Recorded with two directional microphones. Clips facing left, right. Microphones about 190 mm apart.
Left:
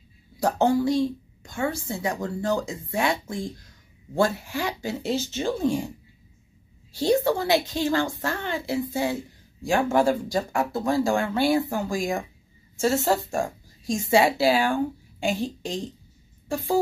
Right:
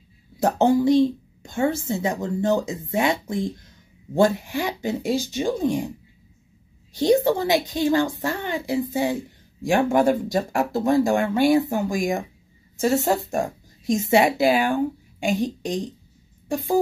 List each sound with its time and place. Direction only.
0.4 s a woman's voice: 20° right (ahead or behind)
6.9 s a woman's voice: 20° right (ahead or behind)